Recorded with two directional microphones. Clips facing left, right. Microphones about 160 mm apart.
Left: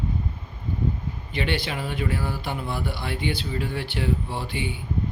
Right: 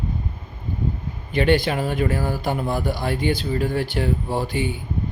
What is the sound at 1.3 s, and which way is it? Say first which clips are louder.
Speech: right 9 dB; 45° right (ahead or behind).